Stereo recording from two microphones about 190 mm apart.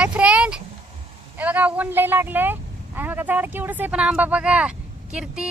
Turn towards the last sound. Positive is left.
turn(degrees=-5)  # may be behind; listen again after turning